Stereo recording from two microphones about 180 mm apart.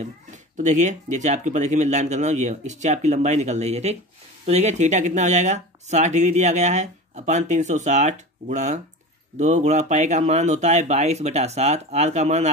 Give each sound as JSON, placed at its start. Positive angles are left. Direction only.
{"t": 0.6, "sound": "speech", "side_deg": -40}